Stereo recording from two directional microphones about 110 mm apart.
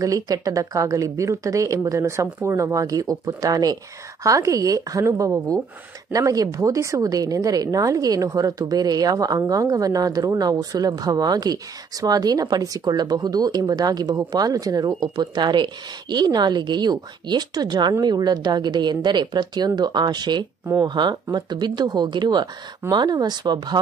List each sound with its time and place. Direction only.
0.0 s a woman's voice: 30° right (ahead or behind)